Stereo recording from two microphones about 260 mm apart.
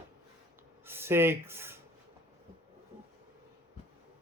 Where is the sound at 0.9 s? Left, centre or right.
Centre.